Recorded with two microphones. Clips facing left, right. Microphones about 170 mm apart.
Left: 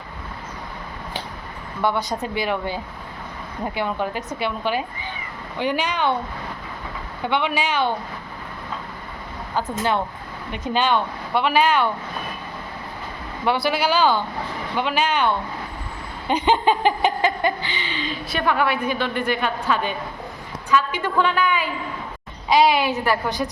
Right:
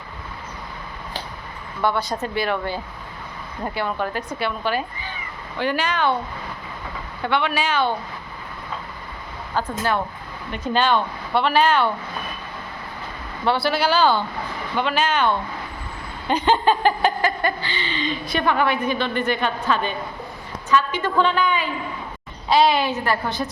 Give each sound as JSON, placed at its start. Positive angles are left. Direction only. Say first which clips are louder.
{"t": 1.8, "sound": "speech", "louder": "even", "side_deg": 15}
{"t": 7.3, "sound": "speech", "louder": "even", "side_deg": 15}
{"t": 9.6, "sound": "speech", "louder": "even", "side_deg": 20}
{"t": 13.4, "sound": "speech", "louder": "right 1 dB", "side_deg": 15}
{"t": 16.3, "sound": "speech", "louder": "even", "side_deg": 15}